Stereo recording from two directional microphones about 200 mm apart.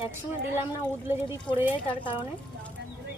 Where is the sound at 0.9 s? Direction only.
10° right (ahead or behind).